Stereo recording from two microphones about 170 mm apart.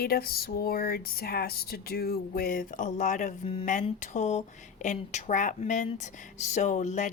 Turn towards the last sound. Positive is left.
turn(degrees=45)  # may be behind; listen again after turning